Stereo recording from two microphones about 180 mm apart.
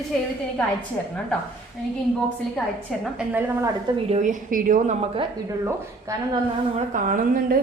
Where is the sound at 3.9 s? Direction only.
35° right (ahead or behind).